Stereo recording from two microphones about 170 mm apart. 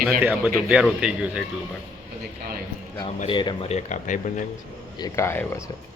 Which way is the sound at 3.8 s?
45° left (ahead or behind).